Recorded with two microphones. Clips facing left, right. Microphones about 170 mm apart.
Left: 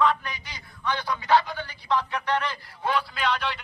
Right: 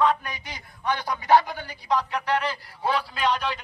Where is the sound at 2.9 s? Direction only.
40° right (ahead or behind).